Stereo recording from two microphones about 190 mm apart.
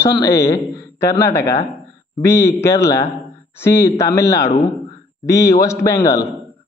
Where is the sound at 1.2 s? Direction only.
15° left (ahead or behind).